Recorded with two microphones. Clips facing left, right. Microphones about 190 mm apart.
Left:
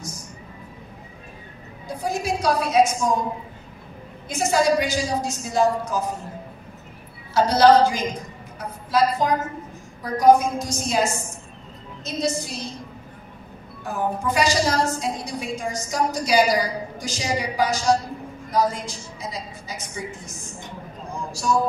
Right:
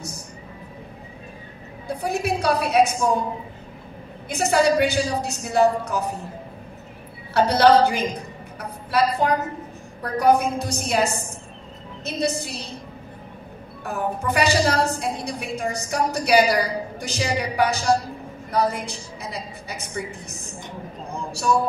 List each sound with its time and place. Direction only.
1.9 s a woman's voice: 60° right (ahead or behind)
4.3 s a woman's voice: 60° right (ahead or behind)
7.3 s a woman's voice: 60° right (ahead or behind)
8.5 s a sound: 60° right (ahead or behind)
10.1 s a woman's voice: 60° right (ahead or behind)
13.8 s a woman's voice: 60° right (ahead or behind)